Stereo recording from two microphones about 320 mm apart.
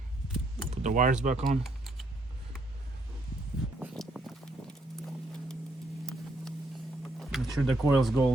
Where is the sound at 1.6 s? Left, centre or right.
Centre.